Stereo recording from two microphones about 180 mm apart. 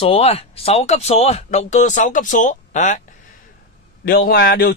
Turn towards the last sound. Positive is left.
turn(degrees=60)  # may be behind; listen again after turning